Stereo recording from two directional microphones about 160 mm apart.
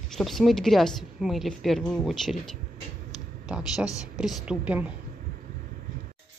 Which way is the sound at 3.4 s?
5° right (ahead or behind).